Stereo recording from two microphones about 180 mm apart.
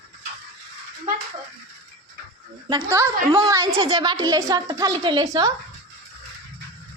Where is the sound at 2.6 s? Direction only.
20° right (ahead or behind).